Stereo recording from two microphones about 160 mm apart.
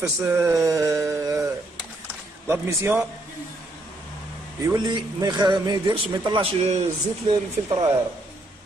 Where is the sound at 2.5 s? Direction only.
15° right (ahead or behind).